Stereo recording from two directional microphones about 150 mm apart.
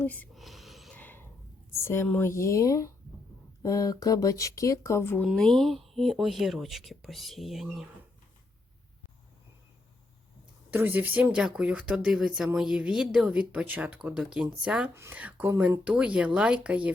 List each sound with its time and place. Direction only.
0.0 s speech: 10° left (ahead or behind)
0.3 s whispering: centre (ahead or behind)
0.9 s snort: 10° left (ahead or behind)
1.7 s a woman's voice: 15° left (ahead or behind)
5.2 s speech: centre (ahead or behind)
10.7 s speech: 15° right (ahead or behind)